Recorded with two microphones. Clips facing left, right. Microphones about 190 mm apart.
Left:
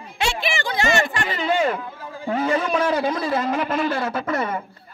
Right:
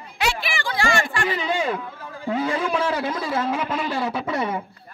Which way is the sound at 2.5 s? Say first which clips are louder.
Left 2 dB; 10° right (ahead or behind).